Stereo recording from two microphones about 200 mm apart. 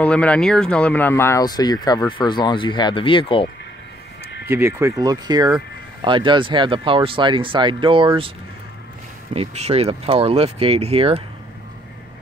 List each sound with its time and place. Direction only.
0.0 s speech: 5° left (ahead or behind); by 3.4 s 25° left (ahead or behind)
4.5 s speech: 10° right (ahead or behind)
9.3 s speech: 30° right (ahead or behind)